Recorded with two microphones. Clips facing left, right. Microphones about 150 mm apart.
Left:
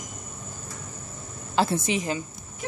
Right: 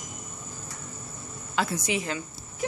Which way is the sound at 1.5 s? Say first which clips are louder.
Left 4 dB; 30° left (ahead or behind).